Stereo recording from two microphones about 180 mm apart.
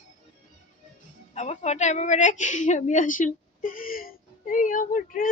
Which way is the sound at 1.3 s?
40° left (ahead or behind).